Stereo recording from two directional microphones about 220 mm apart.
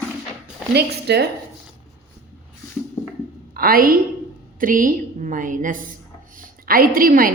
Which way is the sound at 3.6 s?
40° right (ahead or behind).